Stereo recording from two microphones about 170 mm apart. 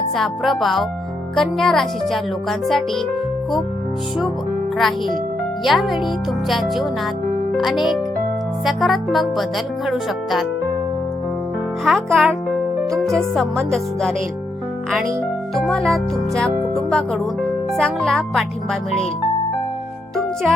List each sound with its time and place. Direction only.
0.2 s speech: centre (ahead or behind)
4.8 s speech: centre (ahead or behind)
11.9 s speech: centre (ahead or behind)
15.5 s speech: 5° left (ahead or behind)